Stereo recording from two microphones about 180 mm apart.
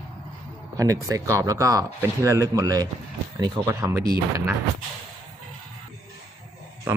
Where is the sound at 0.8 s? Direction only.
15° right (ahead or behind).